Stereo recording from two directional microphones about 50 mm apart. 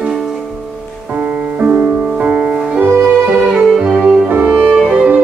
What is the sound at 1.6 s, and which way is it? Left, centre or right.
Music, right.